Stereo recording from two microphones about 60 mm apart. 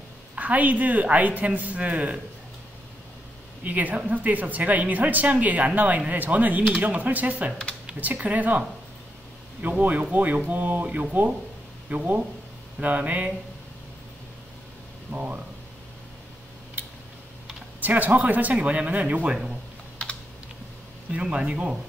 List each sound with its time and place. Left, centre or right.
0.4 s a woman's voice: right
3.6 s a woman's voice: right
15.0 s a woman's voice: right
17.7 s a woman's voice: right
21.1 s speech: centre